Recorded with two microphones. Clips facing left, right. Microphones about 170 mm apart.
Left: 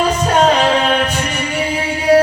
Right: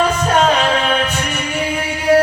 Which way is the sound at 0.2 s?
30° left (ahead or behind).